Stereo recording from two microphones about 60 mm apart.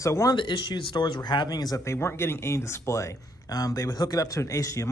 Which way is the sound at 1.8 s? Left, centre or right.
Left.